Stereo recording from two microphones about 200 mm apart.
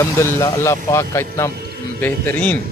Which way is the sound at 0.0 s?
15° left (ahead or behind).